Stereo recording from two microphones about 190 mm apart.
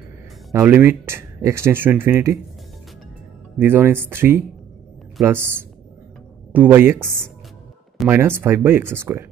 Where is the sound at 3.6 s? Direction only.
10° right (ahead or behind).